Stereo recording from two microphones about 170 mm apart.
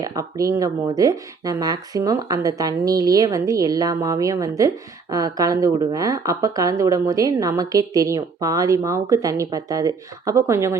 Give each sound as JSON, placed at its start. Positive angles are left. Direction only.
{"t": 0.0, "sound": "a woman's voice", "side_deg": -20}